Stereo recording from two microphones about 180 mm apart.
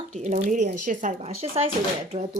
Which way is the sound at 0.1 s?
45° right (ahead or behind).